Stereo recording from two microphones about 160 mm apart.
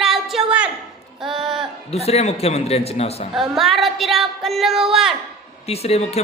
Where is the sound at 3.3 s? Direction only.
Centre (ahead or behind).